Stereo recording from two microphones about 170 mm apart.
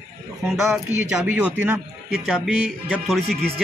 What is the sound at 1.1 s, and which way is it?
A man's voice, 5° right (ahead or behind).